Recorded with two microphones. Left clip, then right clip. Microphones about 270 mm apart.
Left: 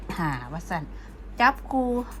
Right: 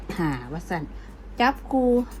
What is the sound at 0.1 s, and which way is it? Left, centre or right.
Speech, left.